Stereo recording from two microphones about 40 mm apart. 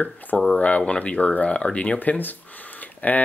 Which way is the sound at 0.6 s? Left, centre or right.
Left.